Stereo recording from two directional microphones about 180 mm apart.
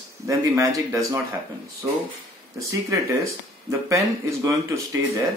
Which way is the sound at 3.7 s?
15° right (ahead or behind).